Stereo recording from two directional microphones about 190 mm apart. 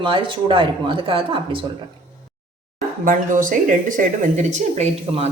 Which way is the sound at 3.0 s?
45° right (ahead or behind).